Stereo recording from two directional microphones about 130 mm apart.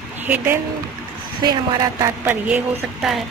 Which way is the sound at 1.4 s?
30° right (ahead or behind).